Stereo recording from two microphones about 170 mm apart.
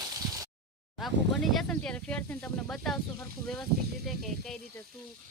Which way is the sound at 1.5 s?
5° left (ahead or behind).